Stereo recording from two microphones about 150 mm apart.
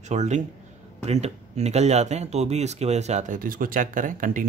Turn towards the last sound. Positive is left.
turn(degrees=-65)  # may be behind; listen again after turning